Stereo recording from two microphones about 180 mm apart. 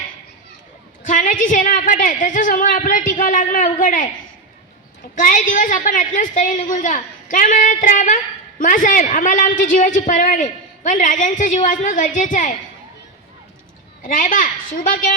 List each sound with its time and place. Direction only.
1.0 s a woman's voice: 45° left (ahead or behind)
5.1 s a woman's voice: 45° left (ahead or behind)
14.0 s a woman's voice: 50° left (ahead or behind)